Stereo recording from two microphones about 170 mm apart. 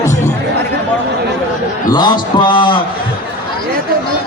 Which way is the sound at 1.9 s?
25° left (ahead or behind).